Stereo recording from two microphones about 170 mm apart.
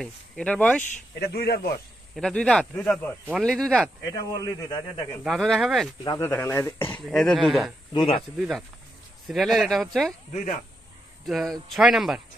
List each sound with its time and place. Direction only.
0.0 s speech: 5° left (ahead or behind)
1.2 s speech: 65° left (ahead or behind)
2.1 s speech: 5° left (ahead or behind)
4.0 s speech: 20° left (ahead or behind)
5.2 s speech: centre (ahead or behind)
6.0 s speech: 15° left (ahead or behind)
6.9 s speech: 5° left (ahead or behind)
7.9 s speech: 30° left (ahead or behind)
8.4 s speech: centre (ahead or behind)
11.2 s speech: centre (ahead or behind)